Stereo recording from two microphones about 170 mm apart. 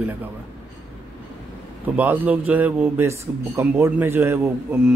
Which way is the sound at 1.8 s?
10° right (ahead or behind).